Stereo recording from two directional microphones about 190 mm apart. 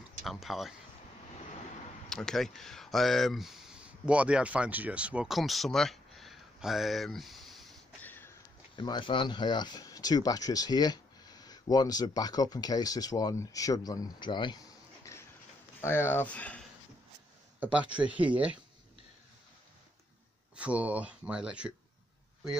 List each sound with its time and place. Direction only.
0.2 s speech: centre (ahead or behind)
2.0 s speech: centre (ahead or behind)
8.7 s speech: 25° left (ahead or behind); by 16.6 s 5° left (ahead or behind)
17.6 s speech: 5° right (ahead or behind)
20.5 s speech: 5° right (ahead or behind)